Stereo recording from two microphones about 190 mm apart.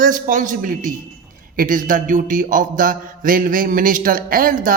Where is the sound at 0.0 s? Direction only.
45° right (ahead or behind).